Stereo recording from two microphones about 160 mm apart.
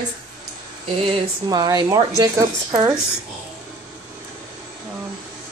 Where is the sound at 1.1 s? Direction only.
25° right (ahead or behind).